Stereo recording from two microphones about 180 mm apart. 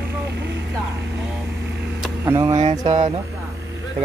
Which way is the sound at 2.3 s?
15° right (ahead or behind).